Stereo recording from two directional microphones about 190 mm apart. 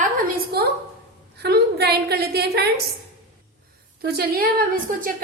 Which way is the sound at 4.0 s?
55° right (ahead or behind).